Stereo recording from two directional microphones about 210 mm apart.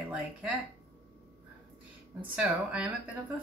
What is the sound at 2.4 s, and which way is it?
Speech, 5° right (ahead or behind).